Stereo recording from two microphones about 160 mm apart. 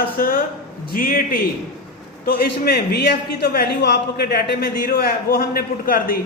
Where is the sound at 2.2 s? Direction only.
75° left (ahead or behind).